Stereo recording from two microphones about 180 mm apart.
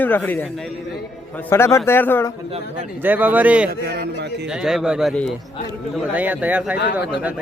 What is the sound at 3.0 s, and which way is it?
Speech, 10° right (ahead or behind).